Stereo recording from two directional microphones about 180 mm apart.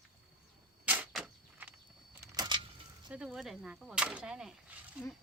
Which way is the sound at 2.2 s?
20° right (ahead or behind).